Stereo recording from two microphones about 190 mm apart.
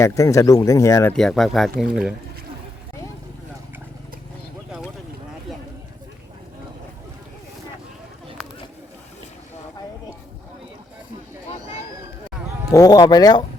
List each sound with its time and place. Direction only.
0.0 s speech: 15° left (ahead or behind)
1.1 s speech: centre (ahead or behind)
12.7 s speech: 20° left (ahead or behind)